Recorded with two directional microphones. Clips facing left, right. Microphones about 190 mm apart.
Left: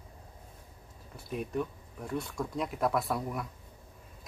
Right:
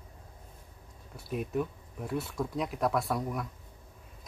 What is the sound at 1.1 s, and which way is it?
Speech, centre (ahead or behind).